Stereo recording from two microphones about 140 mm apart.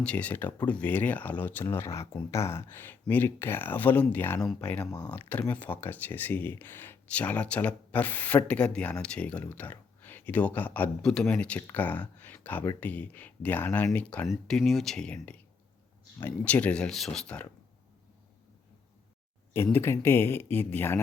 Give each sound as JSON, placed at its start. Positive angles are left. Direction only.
{"t": 0.0, "sound": "speech", "side_deg": 10}
{"t": 19.5, "sound": "speech", "side_deg": 15}